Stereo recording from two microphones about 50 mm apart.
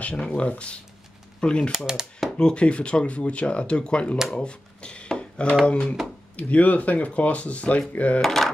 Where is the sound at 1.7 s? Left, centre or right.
Centre.